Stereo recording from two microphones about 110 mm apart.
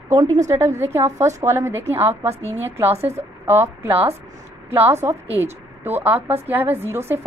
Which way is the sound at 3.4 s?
20° right (ahead or behind).